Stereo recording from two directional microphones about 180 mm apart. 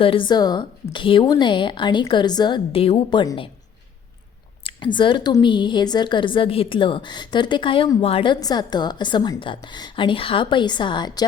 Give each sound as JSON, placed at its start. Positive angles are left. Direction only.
{"t": 0.0, "sound": "a woman's voice", "side_deg": 30}
{"t": 4.6, "sound": "a woman's voice", "side_deg": 25}